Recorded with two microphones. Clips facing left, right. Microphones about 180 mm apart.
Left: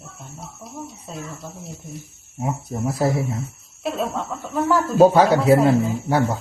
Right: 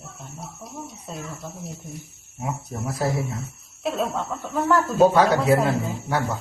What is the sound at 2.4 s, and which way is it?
Speech, 30° left (ahead or behind).